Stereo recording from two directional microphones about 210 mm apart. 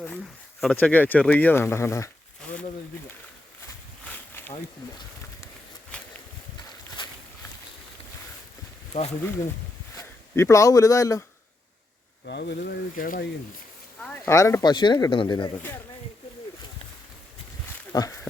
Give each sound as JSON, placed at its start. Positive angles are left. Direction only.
{"t": 0.6, "sound": "speech", "side_deg": 5}
{"t": 4.4, "sound": "a sound", "side_deg": 10}
{"t": 5.9, "sound": "a sound", "side_deg": 5}
{"t": 10.0, "sound": "speech", "side_deg": 15}
{"t": 12.2, "sound": "speech", "side_deg": 50}
{"t": 14.0, "sound": "speech", "side_deg": 15}
{"t": 17.9, "sound": "speech", "side_deg": 20}